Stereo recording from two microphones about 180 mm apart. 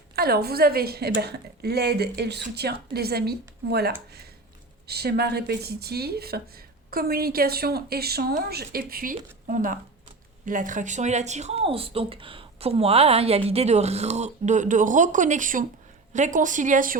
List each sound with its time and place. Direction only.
0.2 s a woman's voice: 60° right (ahead or behind)